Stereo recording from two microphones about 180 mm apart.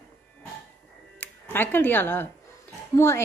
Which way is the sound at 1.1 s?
10° left (ahead or behind).